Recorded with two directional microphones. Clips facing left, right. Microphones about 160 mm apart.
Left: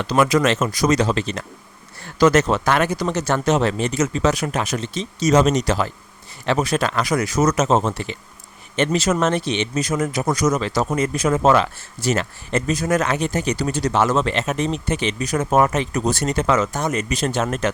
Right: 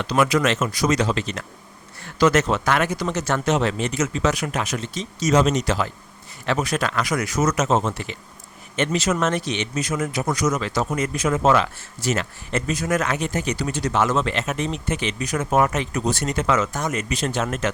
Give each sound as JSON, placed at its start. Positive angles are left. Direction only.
{"t": 0.0, "sound": "speech", "side_deg": 40}
{"t": 5.3, "sound": "speech", "side_deg": 45}